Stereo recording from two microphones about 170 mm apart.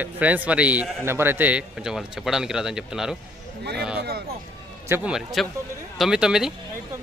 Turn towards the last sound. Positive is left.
turn(degrees=-5)  # may be behind; listen again after turning